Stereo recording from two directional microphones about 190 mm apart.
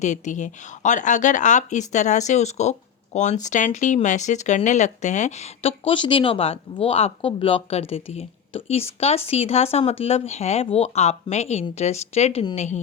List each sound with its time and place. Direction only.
0.0 s speech: 40° left (ahead or behind)